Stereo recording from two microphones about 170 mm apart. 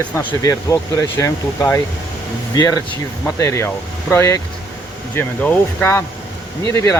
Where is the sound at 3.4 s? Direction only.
15° left (ahead or behind).